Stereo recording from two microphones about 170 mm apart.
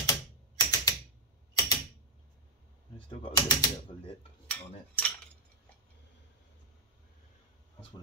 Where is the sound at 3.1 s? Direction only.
25° left (ahead or behind).